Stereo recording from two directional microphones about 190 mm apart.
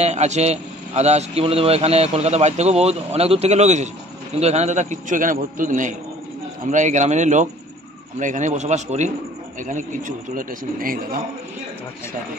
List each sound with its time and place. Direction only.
0.0 s a man's voice: 35° right (ahead or behind)